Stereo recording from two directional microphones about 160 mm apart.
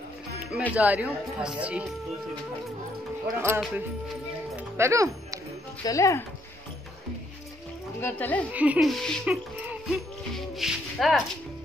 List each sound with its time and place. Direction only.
0.7 s speech: 10° right (ahead or behind)
3.3 s speech: 15° right (ahead or behind)
4.6 s music: 15° right (ahead or behind)
5.9 s speech: 20° left (ahead or behind)
8.0 s speech: 10° left (ahead or behind)
8.5 s speech: 10° right (ahead or behind)